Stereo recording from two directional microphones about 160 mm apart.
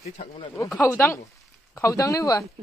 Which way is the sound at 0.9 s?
15° left (ahead or behind).